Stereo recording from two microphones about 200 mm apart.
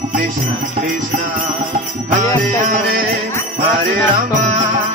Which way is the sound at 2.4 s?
40° right (ahead or behind).